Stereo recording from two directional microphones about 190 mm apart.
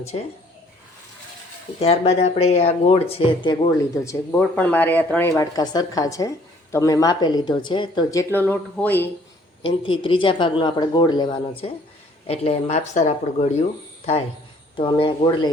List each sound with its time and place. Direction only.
1.8 s speech: 35° left (ahead or behind); by 9.0 s 10° left (ahead or behind)
9.6 s speech: 25° left (ahead or behind)